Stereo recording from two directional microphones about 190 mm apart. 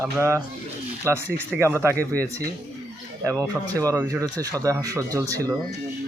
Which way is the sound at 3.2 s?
15° right (ahead or behind).